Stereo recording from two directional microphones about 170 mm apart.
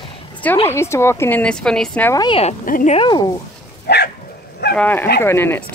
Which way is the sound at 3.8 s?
70° left (ahead or behind).